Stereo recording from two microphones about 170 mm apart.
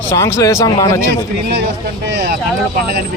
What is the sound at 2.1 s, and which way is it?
Speech, 65° right (ahead or behind).